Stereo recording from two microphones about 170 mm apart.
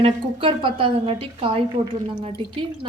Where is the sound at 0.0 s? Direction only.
30° right (ahead or behind).